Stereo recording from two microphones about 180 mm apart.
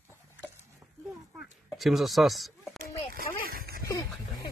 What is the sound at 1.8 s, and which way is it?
Speech, centre (ahead or behind).